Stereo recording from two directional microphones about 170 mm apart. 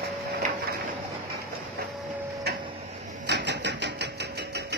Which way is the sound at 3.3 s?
90° right.